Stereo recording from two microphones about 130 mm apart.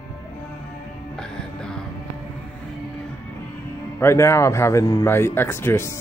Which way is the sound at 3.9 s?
20° left (ahead or behind).